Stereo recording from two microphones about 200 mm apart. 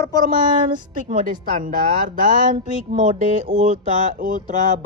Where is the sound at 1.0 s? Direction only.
40° right (ahead or behind).